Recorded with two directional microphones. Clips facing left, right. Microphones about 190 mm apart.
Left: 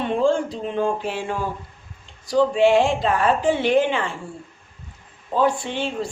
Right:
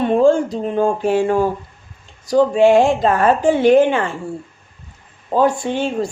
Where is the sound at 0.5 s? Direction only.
45° right (ahead or behind).